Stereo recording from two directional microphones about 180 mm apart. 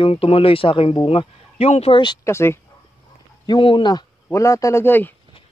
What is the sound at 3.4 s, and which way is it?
A man's voice, 25° left (ahead or behind).